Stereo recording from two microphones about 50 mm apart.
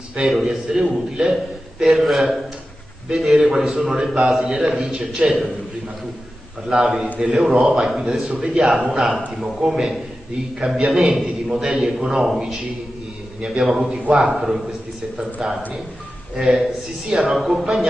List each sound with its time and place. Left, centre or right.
0.3 s a man's voice: centre
4.3 s a man's voice: centre
6.7 s a man's voice: centre
8.3 s speech: centre
8.5 s a man's voice: centre
13.4 s a man's voice: centre
15.1 s speech: centre
16.3 s a man's voice: centre